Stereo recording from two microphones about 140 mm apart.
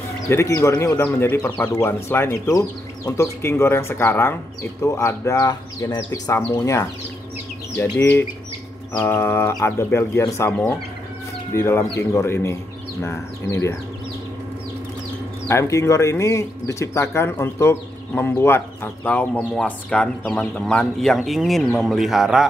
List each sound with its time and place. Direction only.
0.3 s speech: 20° left (ahead or behind)
15.4 s speech: 20° left (ahead or behind); by 22.5 s 5° right (ahead or behind)